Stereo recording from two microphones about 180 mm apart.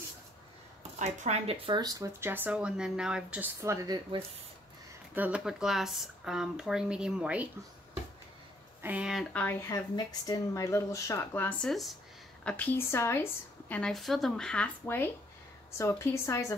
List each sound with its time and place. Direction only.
0.9 s speech: 40° right (ahead or behind)
1.7 s speech: 20° right (ahead or behind)
5.1 s speech: 5° right (ahead or behind)
8.8 s speech: 5° right (ahead or behind); by 16.5 s 15° left (ahead or behind)